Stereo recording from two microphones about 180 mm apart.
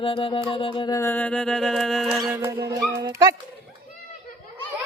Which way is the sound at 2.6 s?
20° right (ahead or behind).